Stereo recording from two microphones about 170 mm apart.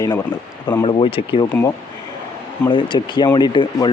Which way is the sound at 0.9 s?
30° left (ahead or behind).